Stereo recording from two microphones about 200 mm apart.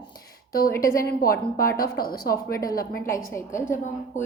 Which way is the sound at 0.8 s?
45° left (ahead or behind).